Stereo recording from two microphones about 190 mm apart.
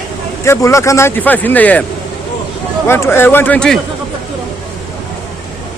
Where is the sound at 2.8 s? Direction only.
10° left (ahead or behind).